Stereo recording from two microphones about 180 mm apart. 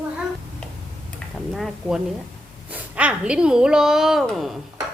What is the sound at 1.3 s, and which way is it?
A woman's voice, centre (ahead or behind).